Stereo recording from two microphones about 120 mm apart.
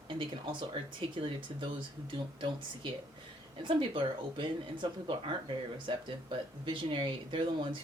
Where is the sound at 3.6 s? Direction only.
40° right (ahead or behind).